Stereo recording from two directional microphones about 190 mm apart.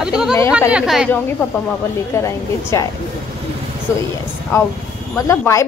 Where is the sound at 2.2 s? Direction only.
15° left (ahead or behind).